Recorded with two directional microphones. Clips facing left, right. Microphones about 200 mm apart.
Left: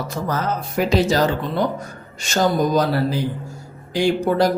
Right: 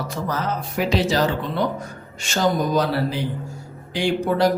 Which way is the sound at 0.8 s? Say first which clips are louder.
Left 3 dB; 45° left (ahead or behind).